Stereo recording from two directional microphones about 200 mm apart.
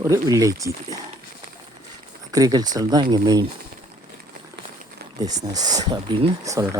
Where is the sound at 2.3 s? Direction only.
20° right (ahead or behind).